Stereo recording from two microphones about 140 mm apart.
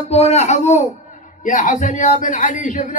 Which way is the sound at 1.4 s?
65° left (ahead or behind).